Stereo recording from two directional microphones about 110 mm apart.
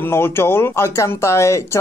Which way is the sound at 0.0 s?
20° left (ahead or behind).